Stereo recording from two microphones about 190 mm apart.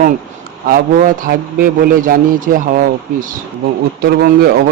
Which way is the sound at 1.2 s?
50° right (ahead or behind).